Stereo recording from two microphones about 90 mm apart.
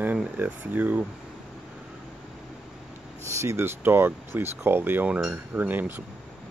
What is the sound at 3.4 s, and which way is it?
Speech, 25° right (ahead or behind).